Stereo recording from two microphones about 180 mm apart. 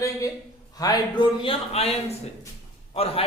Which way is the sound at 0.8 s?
20° left (ahead or behind).